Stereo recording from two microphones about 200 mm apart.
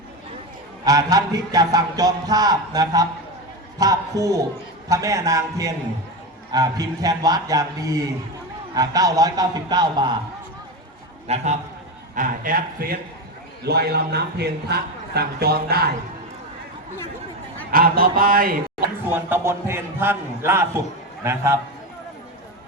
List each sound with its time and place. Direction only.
0.9 s a man's voice: 20° right (ahead or behind)
11.3 s a man's voice: 30° right (ahead or behind); by 16.0 s 50° right (ahead or behind)
17.7 s a man's voice: 45° right (ahead or behind)
19.0 s a man's voice: 10° right (ahead or behind)